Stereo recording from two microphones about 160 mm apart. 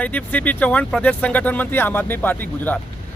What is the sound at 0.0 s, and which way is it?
Speech, 10° left (ahead or behind).